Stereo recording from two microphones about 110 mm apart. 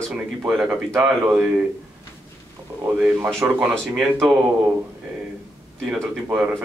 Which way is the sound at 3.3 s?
5° right (ahead or behind).